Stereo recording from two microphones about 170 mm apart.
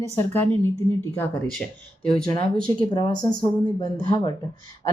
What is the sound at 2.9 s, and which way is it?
Speech, 30° left (ahead or behind).